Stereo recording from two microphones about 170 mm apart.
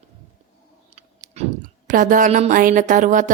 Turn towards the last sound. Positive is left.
turn(degrees=-50)  # may be behind; listen again after turning